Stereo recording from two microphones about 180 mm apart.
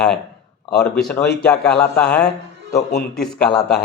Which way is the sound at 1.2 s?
65° left (ahead or behind).